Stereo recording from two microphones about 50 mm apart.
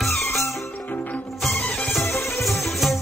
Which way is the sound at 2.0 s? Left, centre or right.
Left.